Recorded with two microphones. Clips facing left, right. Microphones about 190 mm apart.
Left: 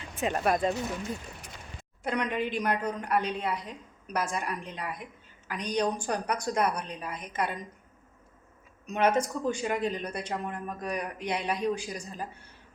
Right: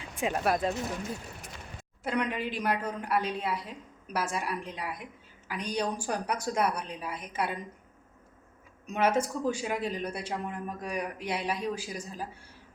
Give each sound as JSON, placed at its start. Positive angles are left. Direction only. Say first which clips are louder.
{"t": 0.2, "sound": "a woman's voice", "louder": "left 1 dB", "side_deg": -5}
{"t": 2.0, "sound": "a woman's voice", "louder": "left 1 dB", "side_deg": -5}
{"t": 8.9, "sound": "speech", "louder": "left 1 dB", "side_deg": -5}